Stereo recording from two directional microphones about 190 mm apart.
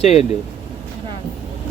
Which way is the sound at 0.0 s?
35° left (ahead or behind).